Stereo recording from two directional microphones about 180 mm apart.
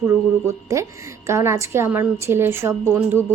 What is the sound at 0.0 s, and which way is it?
A woman's voice, 15° right (ahead or behind).